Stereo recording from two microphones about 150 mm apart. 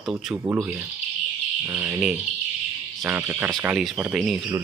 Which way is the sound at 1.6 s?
15° right (ahead or behind).